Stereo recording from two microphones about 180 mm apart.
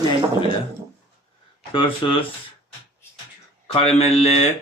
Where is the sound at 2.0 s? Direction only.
25° left (ahead or behind).